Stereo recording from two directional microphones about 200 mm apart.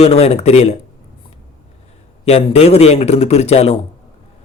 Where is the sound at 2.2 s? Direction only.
30° left (ahead or behind).